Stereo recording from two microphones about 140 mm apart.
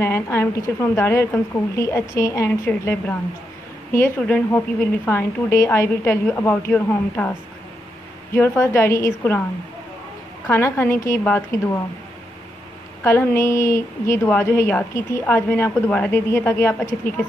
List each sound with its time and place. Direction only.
0.0 s a woman's voice: 20° left (ahead or behind)
8.4 s a woman's voice: 15° left (ahead or behind)
10.5 s a woman's voice: 15° left (ahead or behind)
13.0 s a woman's voice: 20° left (ahead or behind)